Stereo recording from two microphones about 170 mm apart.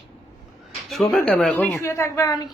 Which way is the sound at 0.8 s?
Centre (ahead or behind).